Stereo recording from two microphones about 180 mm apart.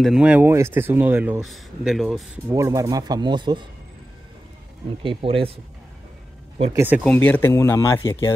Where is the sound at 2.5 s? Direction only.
20° right (ahead or behind).